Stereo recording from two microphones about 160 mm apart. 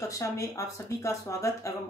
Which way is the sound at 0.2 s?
20° left (ahead or behind).